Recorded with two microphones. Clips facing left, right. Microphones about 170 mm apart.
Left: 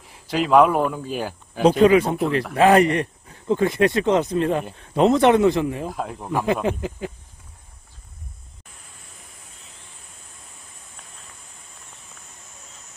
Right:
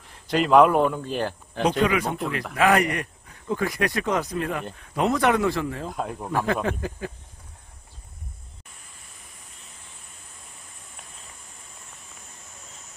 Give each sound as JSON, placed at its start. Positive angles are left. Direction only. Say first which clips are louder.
{"t": 0.1, "sound": "speech", "louder": "left 1 dB", "side_deg": 0}
{"t": 1.8, "sound": "speech", "louder": "left 8 dB", "side_deg": 30}
{"t": 5.9, "sound": "speech", "louder": "left 1 dB", "side_deg": 0}
{"t": 6.3, "sound": "speech", "louder": "left 3 dB", "side_deg": 20}